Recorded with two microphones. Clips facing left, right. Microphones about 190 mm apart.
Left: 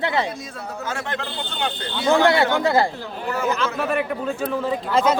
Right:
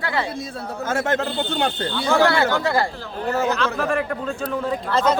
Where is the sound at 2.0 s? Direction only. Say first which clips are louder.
Left 2 dB; 20° left (ahead or behind).